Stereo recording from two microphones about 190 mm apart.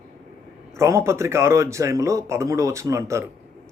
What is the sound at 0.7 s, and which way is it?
Speech, 15° right (ahead or behind).